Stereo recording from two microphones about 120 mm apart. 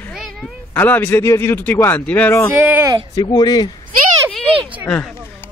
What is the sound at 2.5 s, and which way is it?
Speech, 15° right (ahead or behind).